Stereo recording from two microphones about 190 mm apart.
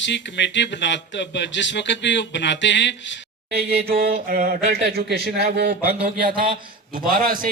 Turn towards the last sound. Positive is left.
turn(degrees=-45)  # may be behind; listen again after turning